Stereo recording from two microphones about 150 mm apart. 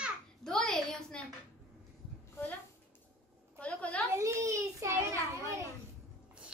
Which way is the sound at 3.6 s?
10° left (ahead or behind).